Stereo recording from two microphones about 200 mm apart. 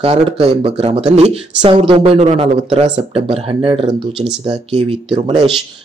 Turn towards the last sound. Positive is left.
turn(degrees=-25)  # may be behind; listen again after turning